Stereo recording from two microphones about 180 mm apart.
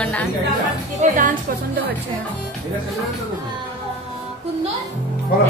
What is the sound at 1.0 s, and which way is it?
Speech, 40° right (ahead or behind).